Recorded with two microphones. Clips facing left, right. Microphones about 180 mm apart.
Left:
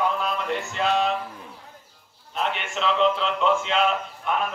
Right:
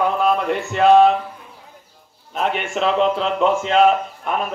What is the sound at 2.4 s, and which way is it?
A man's voice, 45° right (ahead or behind).